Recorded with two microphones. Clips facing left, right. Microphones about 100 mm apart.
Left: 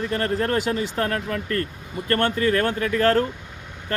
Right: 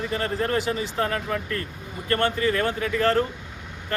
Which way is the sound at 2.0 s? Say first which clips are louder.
Left 2 dB; 60° left (ahead or behind).